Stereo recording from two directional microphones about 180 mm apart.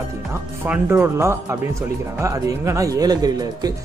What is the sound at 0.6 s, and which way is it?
Speech, 10° right (ahead or behind).